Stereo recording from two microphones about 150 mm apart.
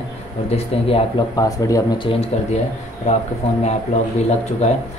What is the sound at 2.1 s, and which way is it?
Speech, 40° left (ahead or behind).